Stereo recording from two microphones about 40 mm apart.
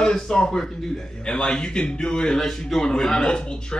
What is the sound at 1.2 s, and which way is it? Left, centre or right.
A man's voice, centre.